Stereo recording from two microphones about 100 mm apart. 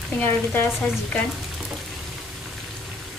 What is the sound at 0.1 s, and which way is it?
Speech, 15° left (ahead or behind).